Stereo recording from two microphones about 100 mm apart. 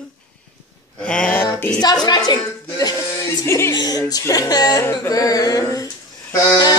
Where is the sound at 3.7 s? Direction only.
40° left (ahead or behind).